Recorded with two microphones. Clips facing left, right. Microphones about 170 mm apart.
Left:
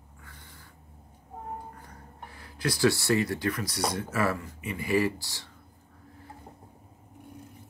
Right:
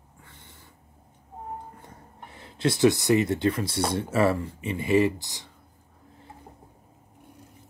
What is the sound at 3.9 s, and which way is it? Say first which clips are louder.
Speech: right 8 dB; 30° right (ahead or behind).